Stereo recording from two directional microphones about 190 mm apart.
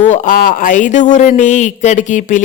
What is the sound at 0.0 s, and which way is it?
Speech, 40° left (ahead or behind).